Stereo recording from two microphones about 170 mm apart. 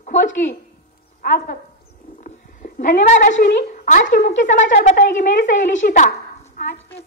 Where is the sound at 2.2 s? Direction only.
50° left (ahead or behind).